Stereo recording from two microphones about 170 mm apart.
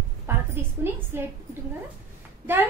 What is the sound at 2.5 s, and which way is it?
Speech, 10° right (ahead or behind).